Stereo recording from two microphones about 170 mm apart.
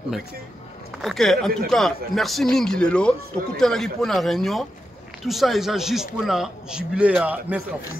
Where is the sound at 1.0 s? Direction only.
Centre (ahead or behind).